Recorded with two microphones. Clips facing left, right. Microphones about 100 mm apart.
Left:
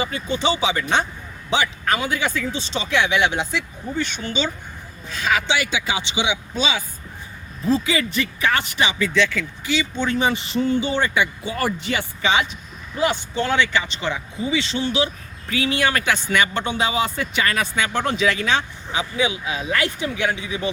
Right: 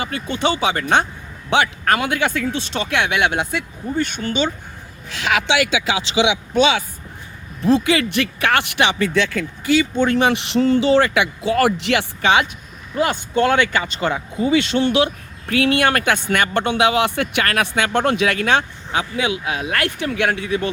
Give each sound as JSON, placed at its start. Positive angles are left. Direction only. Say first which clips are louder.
{"t": 0.0, "sound": "speech", "louder": "right 1 dB", "side_deg": -60}
{"t": 5.0, "sound": "speech", "louder": "right 2 dB", "side_deg": -75}